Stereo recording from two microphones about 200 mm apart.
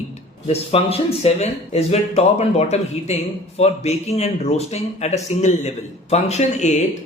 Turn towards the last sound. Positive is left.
turn(degrees=35)  # may be behind; listen again after turning